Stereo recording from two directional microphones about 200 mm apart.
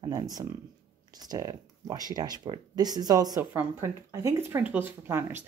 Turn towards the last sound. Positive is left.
turn(degrees=-10)  # may be behind; listen again after turning